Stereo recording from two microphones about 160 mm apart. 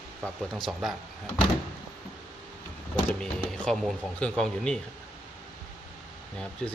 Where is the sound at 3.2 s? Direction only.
5° left (ahead or behind).